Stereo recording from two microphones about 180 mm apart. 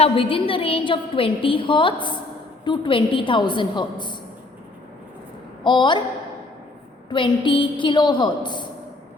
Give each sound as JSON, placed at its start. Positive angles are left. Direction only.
{"t": 0.0, "sound": "a woman's voice", "side_deg": 30}
{"t": 5.6, "sound": "a woman's voice", "side_deg": 25}
{"t": 7.1, "sound": "a woman's voice", "side_deg": 25}